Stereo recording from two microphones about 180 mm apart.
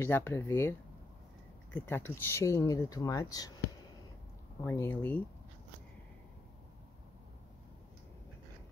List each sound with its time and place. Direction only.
0.0 s speech: 10° left (ahead or behind)
4.6 s speech: 15° left (ahead or behind)